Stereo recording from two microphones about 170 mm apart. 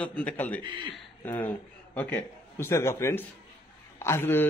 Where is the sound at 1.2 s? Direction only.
10° left (ahead or behind).